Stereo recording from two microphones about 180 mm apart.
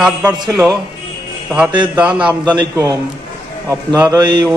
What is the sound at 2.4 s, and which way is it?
A man's voice, 20° right (ahead or behind).